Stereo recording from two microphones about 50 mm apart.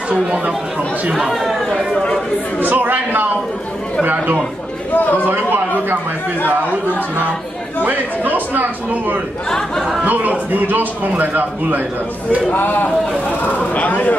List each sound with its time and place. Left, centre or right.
0.1 s speech: right
2.6 s a man's voice: right
4.9 s speech: left
5.3 s a man's voice: right
7.8 s a man's voice: right
9.5 s speech: centre
10.0 s a man's voice: right
12.5 s speech: left